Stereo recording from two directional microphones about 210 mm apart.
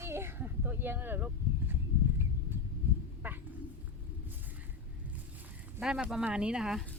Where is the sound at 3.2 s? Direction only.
10° right (ahead or behind).